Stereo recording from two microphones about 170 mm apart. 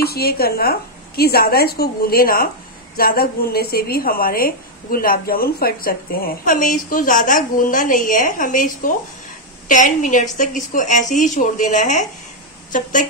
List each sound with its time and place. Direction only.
0.0 s a woman's voice: 65° left (ahead or behind); by 12.1 s 45° left (ahead or behind)